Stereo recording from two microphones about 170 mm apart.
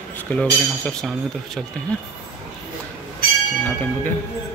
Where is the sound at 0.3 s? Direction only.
5° left (ahead or behind).